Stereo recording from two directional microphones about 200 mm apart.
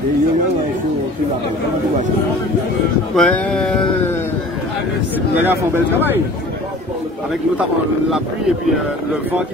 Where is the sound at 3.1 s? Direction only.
5° left (ahead or behind).